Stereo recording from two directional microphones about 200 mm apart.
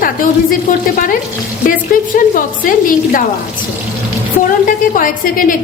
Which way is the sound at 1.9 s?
45° left (ahead or behind).